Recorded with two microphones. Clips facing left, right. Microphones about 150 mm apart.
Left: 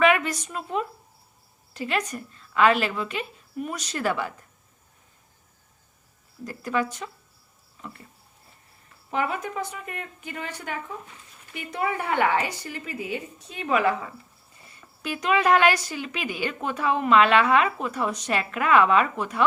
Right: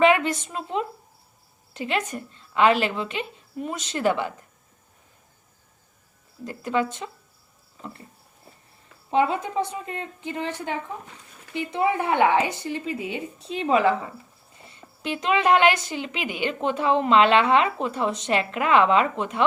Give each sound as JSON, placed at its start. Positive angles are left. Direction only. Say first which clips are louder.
{"t": 0.0, "sound": "a woman's voice", "louder": "right 2 dB", "side_deg": -25}
{"t": 6.4, "sound": "a woman's voice", "louder": "right 2 dB", "side_deg": -20}
{"t": 9.0, "sound": "a woman's voice", "louder": "right 5 dB", "side_deg": -25}